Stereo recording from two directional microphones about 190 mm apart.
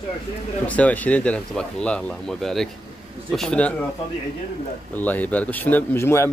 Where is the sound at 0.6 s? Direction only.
5° left (ahead or behind).